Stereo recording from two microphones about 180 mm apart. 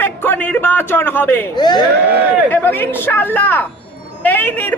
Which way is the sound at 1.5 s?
25° left (ahead or behind).